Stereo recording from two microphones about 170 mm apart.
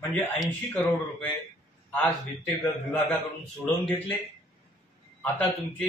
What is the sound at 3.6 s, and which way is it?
Speech, 10° left (ahead or behind).